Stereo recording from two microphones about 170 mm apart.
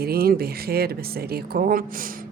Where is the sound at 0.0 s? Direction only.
65° right (ahead or behind).